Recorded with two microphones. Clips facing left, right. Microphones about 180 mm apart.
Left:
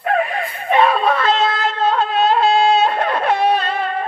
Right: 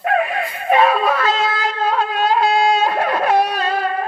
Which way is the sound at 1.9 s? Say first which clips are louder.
Left 1 dB; 10° right (ahead or behind).